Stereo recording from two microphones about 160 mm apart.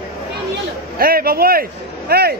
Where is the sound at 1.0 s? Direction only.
70° right (ahead or behind).